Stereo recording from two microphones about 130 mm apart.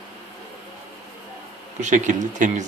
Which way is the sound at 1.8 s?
70° right (ahead or behind).